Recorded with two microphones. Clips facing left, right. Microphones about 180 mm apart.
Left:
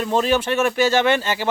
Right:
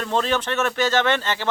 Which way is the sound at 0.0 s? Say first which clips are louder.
Left 4 dB; 10° left (ahead or behind).